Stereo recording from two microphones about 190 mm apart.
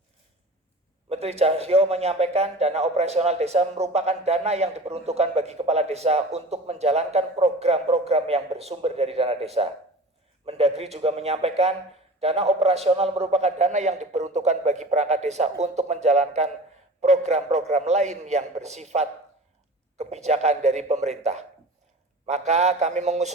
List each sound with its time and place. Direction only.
1.1 s a man's voice: 35° right (ahead or behind)
22.3 s a man's voice: 35° right (ahead or behind)